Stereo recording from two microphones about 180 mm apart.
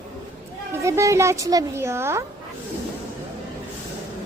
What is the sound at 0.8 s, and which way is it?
Speech, 15° right (ahead or behind).